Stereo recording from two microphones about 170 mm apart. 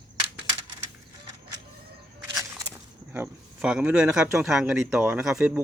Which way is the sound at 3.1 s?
10° right (ahead or behind).